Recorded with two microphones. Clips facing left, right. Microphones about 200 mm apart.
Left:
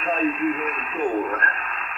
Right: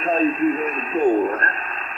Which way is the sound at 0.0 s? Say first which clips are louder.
Right 4 dB; 35° right (ahead or behind).